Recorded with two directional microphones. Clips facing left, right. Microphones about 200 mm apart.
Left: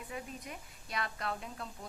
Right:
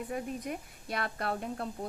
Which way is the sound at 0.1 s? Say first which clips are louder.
Right 6 dB; 50° right (ahead or behind).